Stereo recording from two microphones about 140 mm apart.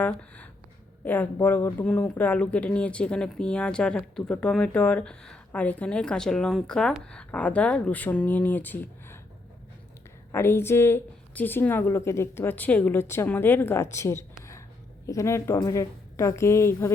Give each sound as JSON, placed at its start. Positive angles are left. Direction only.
{"t": 1.0, "sound": "speech", "side_deg": 10}
{"t": 10.3, "sound": "a woman's voice", "side_deg": 15}